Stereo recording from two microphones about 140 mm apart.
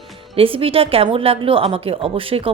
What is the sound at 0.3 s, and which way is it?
A woman's voice, 40° right (ahead or behind).